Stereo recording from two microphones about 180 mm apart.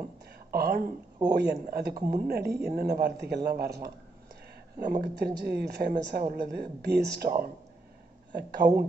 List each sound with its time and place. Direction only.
0.5 s speech: 60° right (ahead or behind)